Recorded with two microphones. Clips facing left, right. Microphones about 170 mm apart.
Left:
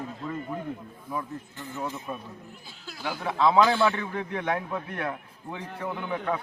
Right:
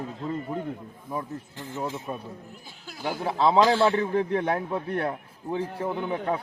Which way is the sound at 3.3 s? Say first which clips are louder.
Right 1 dB; 30° right (ahead or behind).